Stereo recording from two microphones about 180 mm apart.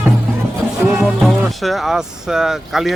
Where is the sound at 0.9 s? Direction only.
Centre (ahead or behind).